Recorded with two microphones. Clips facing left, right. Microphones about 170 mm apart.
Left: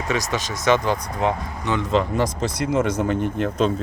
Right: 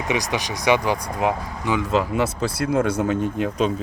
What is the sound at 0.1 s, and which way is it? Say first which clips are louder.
Speech: even; 15° right (ahead or behind).